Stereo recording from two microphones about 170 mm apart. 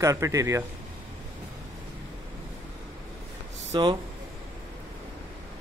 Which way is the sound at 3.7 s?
30° right (ahead or behind).